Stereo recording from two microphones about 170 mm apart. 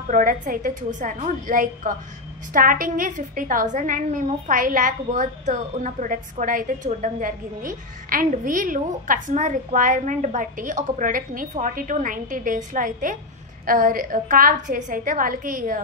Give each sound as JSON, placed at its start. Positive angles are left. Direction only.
{"t": 0.1, "sound": "a woman's voice", "side_deg": -55}